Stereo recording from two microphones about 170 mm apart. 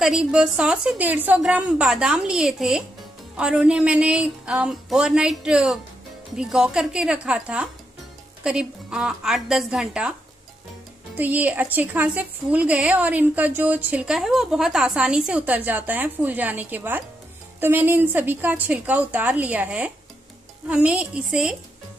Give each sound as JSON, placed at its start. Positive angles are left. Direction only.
{"t": 0.0, "sound": "a woman's voice", "side_deg": -5}
{"t": 11.1, "sound": "a woman's voice", "side_deg": -10}